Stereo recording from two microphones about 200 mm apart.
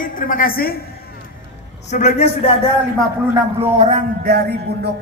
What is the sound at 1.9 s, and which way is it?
Speech, 35° left (ahead or behind).